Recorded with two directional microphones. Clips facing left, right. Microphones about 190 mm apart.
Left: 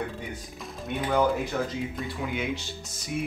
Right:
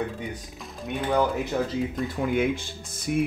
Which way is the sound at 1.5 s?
30° right (ahead or behind).